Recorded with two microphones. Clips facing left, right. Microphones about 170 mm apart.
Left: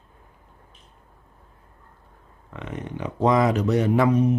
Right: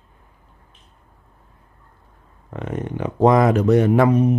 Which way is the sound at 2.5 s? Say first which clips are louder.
Right 6 dB; 45° right (ahead or behind).